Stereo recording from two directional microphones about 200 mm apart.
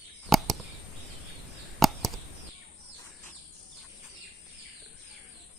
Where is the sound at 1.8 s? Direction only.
Centre (ahead or behind).